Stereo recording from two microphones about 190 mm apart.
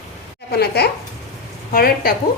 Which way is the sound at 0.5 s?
55° left (ahead or behind).